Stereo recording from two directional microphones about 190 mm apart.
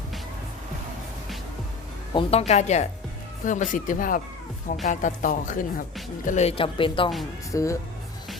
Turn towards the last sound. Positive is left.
turn(degrees=15)  # may be behind; listen again after turning